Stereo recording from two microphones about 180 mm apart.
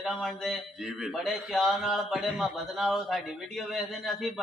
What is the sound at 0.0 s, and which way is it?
A man's voice, centre (ahead or behind).